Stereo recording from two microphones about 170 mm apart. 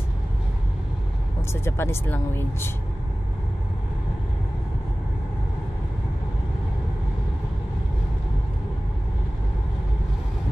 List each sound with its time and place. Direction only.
1.5 s speech: 15° left (ahead or behind)